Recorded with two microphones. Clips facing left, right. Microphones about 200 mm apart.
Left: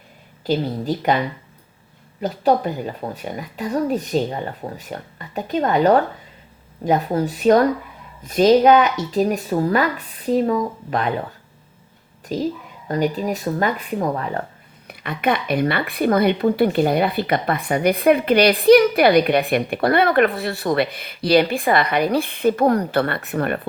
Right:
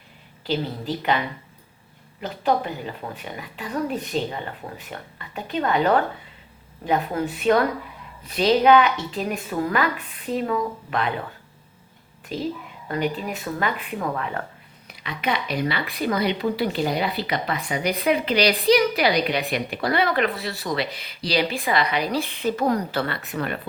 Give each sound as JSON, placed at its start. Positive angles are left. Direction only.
{"t": 0.4, "sound": "a woman's voice", "side_deg": 45}
{"t": 2.2, "sound": "a woman's voice", "side_deg": 40}
{"t": 12.3, "sound": "a woman's voice", "side_deg": 40}
{"t": 14.8, "sound": "speech", "side_deg": 55}